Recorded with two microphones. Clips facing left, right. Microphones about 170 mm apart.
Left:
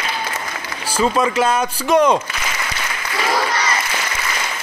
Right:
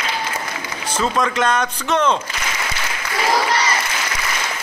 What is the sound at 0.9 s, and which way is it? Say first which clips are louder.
A man's voice: left 3 dB; 10° left (ahead or behind).